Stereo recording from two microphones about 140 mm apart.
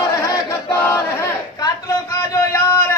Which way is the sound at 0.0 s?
20° left (ahead or behind).